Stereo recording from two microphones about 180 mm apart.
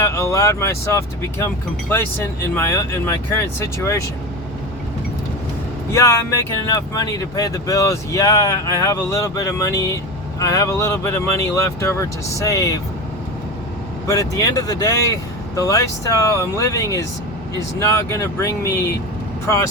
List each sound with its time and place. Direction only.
0.1 s speech: 15° left (ahead or behind)
2.6 s speech: 15° left (ahead or behind)
5.9 s speech: 15° left (ahead or behind)
14.1 s speech: 20° left (ahead or behind)